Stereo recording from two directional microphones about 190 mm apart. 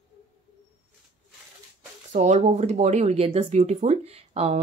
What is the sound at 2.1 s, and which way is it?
Speech, 35° right (ahead or behind).